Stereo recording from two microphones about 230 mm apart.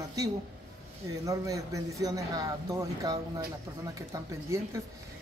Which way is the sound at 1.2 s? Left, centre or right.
Centre.